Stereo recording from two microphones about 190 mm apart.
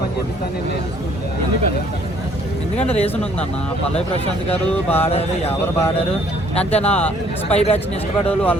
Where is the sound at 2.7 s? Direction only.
35° left (ahead or behind).